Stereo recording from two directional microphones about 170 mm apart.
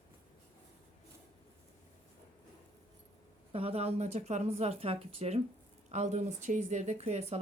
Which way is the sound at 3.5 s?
35° right (ahead or behind).